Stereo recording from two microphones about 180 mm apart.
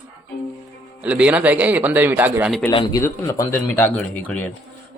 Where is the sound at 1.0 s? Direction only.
5° right (ahead or behind).